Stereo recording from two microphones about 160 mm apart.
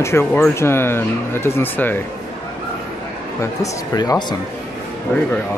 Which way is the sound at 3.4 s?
20° left (ahead or behind).